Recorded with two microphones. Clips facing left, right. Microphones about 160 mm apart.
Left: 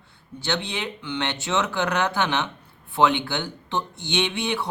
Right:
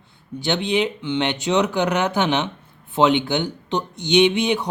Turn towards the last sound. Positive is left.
turn(degrees=-15)  # may be behind; listen again after turning